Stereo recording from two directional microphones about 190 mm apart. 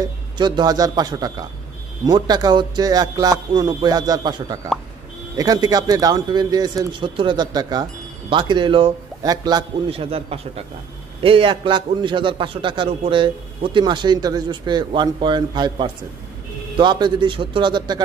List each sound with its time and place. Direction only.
0.0 s speech: 25° right (ahead or behind)